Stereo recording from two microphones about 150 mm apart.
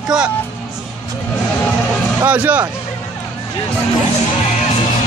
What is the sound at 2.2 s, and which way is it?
Speech, 10° right (ahead or behind).